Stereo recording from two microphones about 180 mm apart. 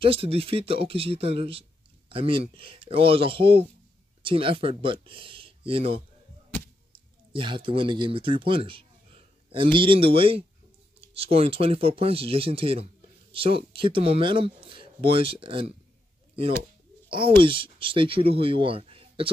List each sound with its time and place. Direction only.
0.0 s speech: 30° right (ahead or behind)
7.3 s speech: 30° right (ahead or behind)
17.1 s speech: 30° right (ahead or behind)